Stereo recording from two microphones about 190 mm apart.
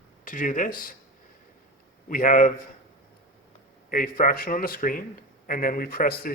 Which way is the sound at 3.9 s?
45° left (ahead or behind).